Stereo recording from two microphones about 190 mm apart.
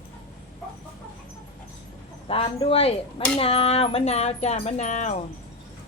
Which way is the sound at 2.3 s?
30° left (ahead or behind).